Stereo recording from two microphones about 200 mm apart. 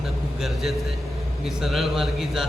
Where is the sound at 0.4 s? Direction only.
Centre (ahead or behind).